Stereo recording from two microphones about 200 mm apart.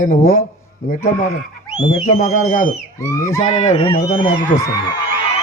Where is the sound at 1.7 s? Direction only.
40° left (ahead or behind).